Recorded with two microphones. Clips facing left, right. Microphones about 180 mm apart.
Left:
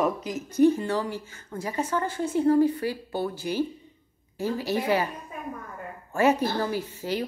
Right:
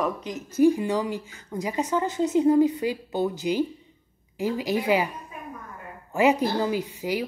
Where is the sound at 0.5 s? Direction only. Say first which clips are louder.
Right 1 dB; 10° right (ahead or behind).